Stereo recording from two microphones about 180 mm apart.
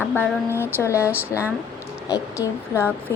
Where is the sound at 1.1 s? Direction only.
10° right (ahead or behind).